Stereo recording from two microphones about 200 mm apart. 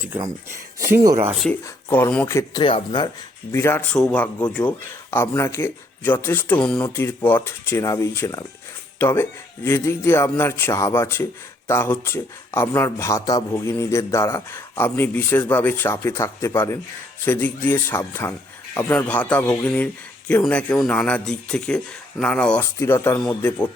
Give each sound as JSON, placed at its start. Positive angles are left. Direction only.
{"t": 0.0, "sound": "speech", "side_deg": -10}
{"t": 1.3, "sound": "speech", "side_deg": 5}
{"t": 3.5, "sound": "speech", "side_deg": 10}